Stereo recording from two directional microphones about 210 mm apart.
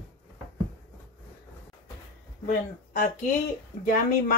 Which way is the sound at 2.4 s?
40° left (ahead or behind).